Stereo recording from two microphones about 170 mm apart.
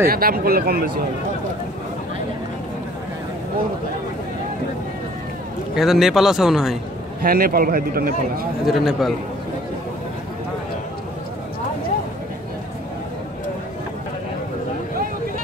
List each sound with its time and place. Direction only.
0.1 s a man's voice: 60° right (ahead or behind)
5.8 s a man's voice: centre (ahead or behind)
7.2 s a man's voice: 60° right (ahead or behind)
8.6 s a man's voice: centre (ahead or behind)